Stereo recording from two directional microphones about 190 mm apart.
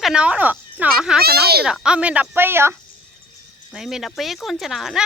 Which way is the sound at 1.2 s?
55° right (ahead or behind).